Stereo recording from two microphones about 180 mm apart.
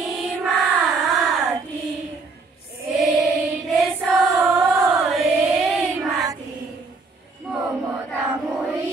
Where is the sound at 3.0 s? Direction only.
Centre (ahead or behind).